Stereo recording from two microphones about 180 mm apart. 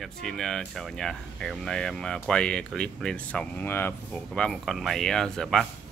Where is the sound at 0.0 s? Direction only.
5° left (ahead or behind).